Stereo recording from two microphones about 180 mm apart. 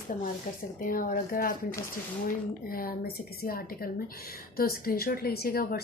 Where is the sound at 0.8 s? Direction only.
50° left (ahead or behind).